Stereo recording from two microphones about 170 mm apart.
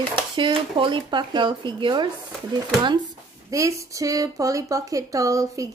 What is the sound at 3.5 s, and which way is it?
Speech, 20° right (ahead or behind).